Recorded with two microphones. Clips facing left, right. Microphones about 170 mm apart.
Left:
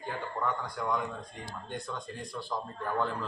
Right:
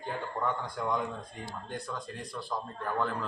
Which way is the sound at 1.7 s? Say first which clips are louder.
Even; centre (ahead or behind).